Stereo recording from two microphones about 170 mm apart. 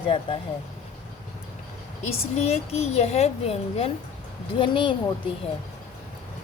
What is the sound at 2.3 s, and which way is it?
A woman's voice, 40° left (ahead or behind).